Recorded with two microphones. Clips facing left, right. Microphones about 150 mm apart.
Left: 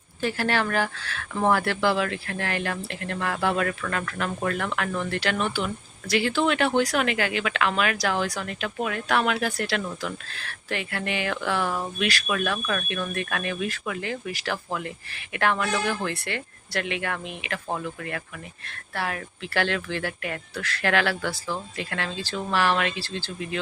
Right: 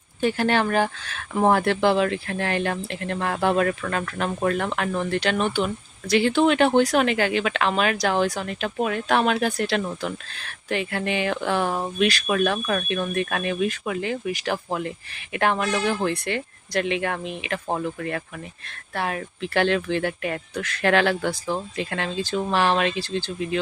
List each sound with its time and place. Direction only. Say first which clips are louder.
0.2 s speech: right 4 dB; 20° right (ahead or behind)